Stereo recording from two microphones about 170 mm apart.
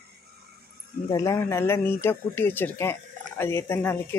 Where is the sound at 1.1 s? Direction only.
20° left (ahead or behind).